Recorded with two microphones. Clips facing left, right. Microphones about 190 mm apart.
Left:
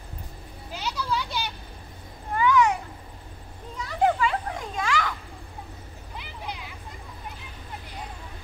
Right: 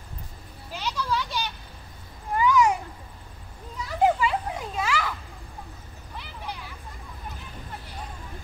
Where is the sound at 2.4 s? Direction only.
10° right (ahead or behind).